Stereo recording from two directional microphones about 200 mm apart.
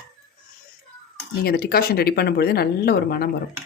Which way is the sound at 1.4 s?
50° left (ahead or behind).